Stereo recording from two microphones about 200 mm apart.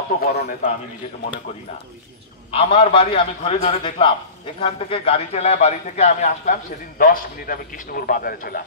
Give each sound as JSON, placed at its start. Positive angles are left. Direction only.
{"t": 0.4, "sound": "a man's voice", "side_deg": 40}
{"t": 2.5, "sound": "a man's voice", "side_deg": 25}